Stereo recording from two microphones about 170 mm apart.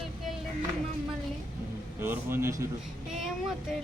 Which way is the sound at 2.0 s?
15° right (ahead or behind).